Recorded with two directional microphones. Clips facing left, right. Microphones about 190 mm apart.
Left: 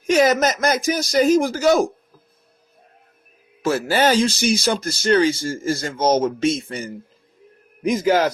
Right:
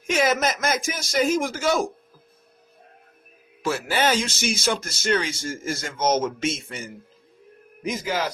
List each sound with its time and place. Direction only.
0.1 s speech: 40° left (ahead or behind)
3.6 s speech: 40° left (ahead or behind)
7.9 s a man's voice: 55° left (ahead or behind)